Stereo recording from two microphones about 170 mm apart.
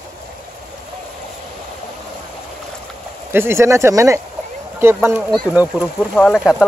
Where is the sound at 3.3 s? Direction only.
15° right (ahead or behind).